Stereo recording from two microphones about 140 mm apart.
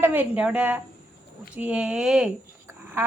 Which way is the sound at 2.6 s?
15° right (ahead or behind).